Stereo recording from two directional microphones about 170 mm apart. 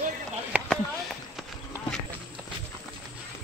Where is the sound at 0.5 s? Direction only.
10° right (ahead or behind).